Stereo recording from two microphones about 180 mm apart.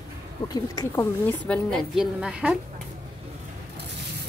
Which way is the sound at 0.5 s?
20° left (ahead or behind).